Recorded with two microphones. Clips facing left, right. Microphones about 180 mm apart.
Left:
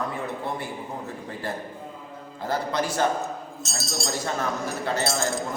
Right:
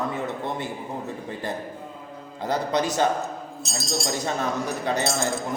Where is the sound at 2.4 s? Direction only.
20° right (ahead or behind).